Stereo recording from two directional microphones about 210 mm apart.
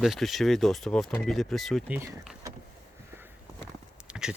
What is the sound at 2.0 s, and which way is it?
Speech, 10° right (ahead or behind).